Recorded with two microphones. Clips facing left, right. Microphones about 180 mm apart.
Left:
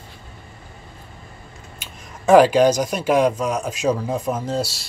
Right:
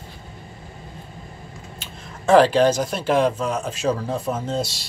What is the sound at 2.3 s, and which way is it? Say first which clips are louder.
Speech: left 2 dB; 10° left (ahead or behind).